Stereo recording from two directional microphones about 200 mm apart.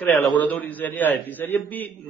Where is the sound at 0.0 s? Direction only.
5° left (ahead or behind).